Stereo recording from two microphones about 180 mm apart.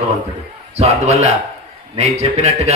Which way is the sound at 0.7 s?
35° right (ahead or behind).